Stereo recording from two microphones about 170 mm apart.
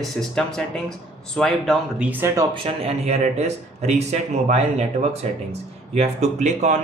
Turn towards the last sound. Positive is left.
turn(degrees=-40)  # may be behind; listen again after turning